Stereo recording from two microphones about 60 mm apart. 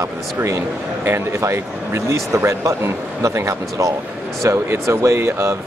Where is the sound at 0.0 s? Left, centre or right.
Right.